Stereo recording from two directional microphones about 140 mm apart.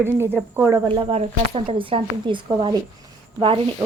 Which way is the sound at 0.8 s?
35° right (ahead or behind).